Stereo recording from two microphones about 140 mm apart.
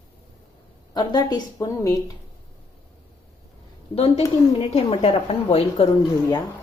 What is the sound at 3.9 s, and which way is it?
A woman's voice, 45° left (ahead or behind).